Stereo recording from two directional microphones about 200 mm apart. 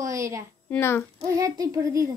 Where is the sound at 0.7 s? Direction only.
10° left (ahead or behind).